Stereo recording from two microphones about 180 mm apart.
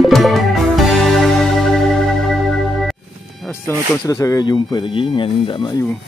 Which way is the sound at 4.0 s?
20° left (ahead or behind).